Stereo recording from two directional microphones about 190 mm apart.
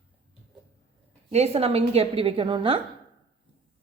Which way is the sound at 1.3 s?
35° right (ahead or behind).